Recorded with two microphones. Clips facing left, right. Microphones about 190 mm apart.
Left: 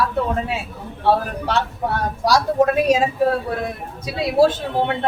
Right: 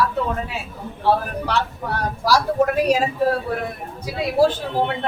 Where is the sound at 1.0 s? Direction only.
25° left (ahead or behind).